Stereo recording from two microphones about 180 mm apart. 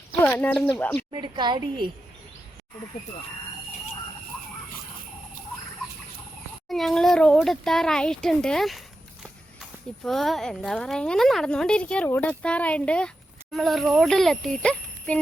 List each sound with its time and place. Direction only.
0.2 s speech: 10° left (ahead or behind)
1.2 s a woman's voice: 25° right (ahead or behind)
6.7 s speech: centre (ahead or behind)
10.0 s speech: centre (ahead or behind)